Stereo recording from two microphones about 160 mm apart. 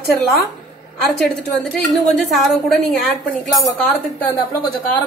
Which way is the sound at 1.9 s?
Centre (ahead or behind).